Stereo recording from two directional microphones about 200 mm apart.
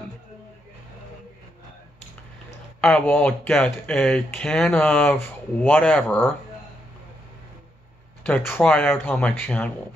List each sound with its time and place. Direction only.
2.8 s speech: 10° left (ahead or behind)
8.2 s speech: 10° left (ahead or behind)